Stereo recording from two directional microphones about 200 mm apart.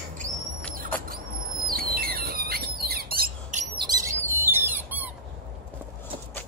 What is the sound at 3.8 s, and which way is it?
Bird, 20° right (ahead or behind).